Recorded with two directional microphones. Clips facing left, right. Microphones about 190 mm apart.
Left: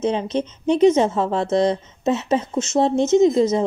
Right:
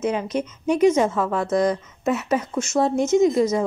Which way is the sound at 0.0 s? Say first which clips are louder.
Left 2 dB; 25° left (ahead or behind).